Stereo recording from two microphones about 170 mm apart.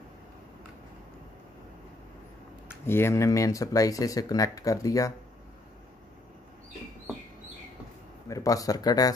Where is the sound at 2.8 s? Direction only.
15° left (ahead or behind).